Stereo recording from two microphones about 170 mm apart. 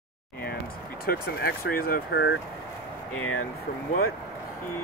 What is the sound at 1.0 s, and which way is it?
Speech, 65° left (ahead or behind).